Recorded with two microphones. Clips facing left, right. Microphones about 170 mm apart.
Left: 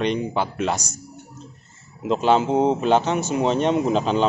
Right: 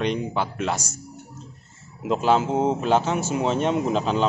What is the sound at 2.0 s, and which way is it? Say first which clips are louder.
Speech: left 2 dB; 5° right (ahead or behind).